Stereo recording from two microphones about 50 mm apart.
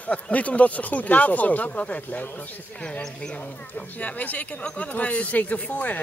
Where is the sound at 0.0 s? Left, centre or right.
Left.